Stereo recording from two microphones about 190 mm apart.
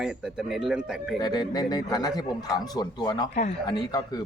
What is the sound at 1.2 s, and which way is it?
Speech, 20° left (ahead or behind).